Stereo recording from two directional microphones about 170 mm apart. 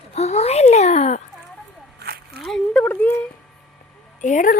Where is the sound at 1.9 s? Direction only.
70° right (ahead or behind).